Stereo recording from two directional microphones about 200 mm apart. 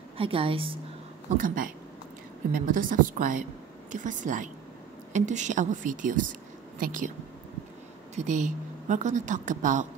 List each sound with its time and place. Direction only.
0.2 s a woman's voice: 25° right (ahead or behind)
1.4 s a woman's voice: 45° right (ahead or behind)
8.2 s a woman's voice: 40° right (ahead or behind)